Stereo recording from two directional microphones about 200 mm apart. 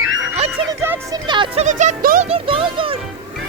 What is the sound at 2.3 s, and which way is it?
Speech, 30° right (ahead or behind).